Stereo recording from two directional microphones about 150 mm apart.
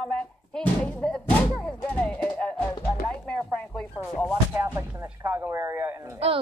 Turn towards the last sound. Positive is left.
turn(degrees=-20)  # may be behind; listen again after turning